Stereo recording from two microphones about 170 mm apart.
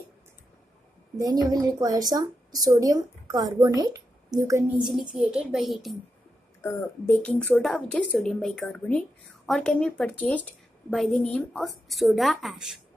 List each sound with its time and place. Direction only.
1.2 s a woman's voice: 20° right (ahead or behind)
5.1 s a woman's voice: 5° right (ahead or behind)
6.6 s a woman's voice: 10° left (ahead or behind)